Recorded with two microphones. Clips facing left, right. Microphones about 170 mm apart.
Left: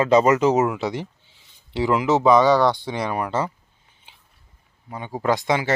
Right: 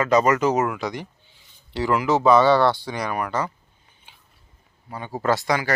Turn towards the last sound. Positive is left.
turn(degrees=25)  # may be behind; listen again after turning